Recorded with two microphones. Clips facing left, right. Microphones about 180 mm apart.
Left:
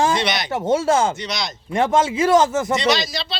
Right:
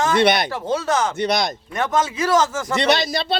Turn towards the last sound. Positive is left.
turn(degrees=-55)  # may be behind; listen again after turning